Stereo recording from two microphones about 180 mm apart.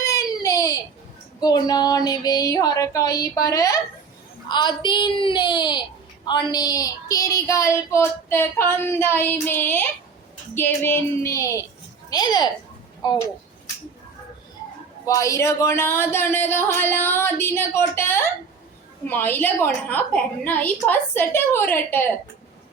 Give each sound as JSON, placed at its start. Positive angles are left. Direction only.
{"t": 0.0, "sound": "a sound", "side_deg": 20}
{"t": 1.4, "sound": "child singing", "side_deg": 20}
{"t": 6.2, "sound": "speech", "side_deg": 25}
{"t": 12.1, "sound": "child singing", "side_deg": 20}
{"t": 15.0, "sound": "speech", "side_deg": 15}